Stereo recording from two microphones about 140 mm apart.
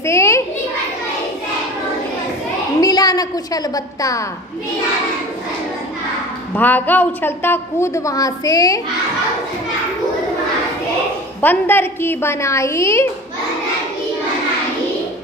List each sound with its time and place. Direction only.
0.0 s children playing: 20° left (ahead or behind)
2.8 s a woman's voice: 25° left (ahead or behind)
6.5 s a woman's voice: 15° left (ahead or behind)
11.4 s a woman's voice: 15° left (ahead or behind)